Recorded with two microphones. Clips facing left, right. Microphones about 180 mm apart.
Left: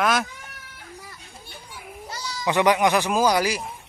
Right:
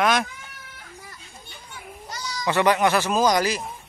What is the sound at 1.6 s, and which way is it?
Children playing, 10° left (ahead or behind).